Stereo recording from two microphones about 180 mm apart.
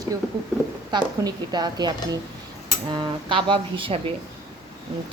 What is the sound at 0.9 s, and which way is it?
A woman's voice, 25° right (ahead or behind).